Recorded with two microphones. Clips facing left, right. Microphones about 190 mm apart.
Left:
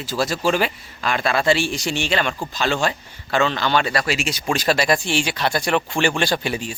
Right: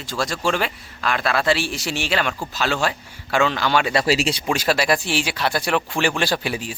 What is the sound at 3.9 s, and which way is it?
Speech, 30° right (ahead or behind).